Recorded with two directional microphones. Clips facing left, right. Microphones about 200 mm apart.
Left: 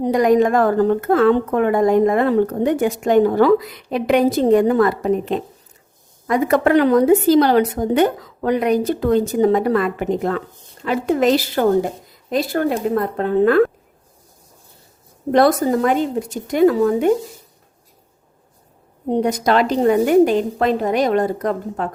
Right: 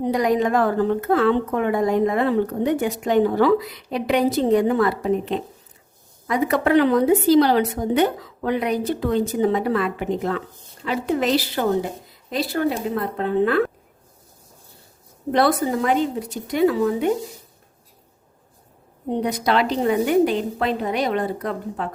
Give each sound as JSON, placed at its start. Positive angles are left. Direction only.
{"t": 0.0, "sound": "a woman's voice", "side_deg": 50}
{"t": 15.3, "sound": "a woman's voice", "side_deg": 45}
{"t": 19.1, "sound": "a woman's voice", "side_deg": 45}